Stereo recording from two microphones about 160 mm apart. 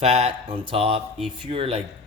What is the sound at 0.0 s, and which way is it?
Speech, 40° right (ahead or behind).